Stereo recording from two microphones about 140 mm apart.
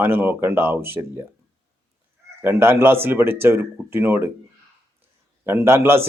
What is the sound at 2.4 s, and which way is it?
Speech, 15° right (ahead or behind).